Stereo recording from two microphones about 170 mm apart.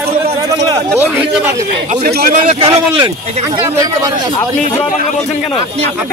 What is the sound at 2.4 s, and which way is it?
Speech, 30° right (ahead or behind).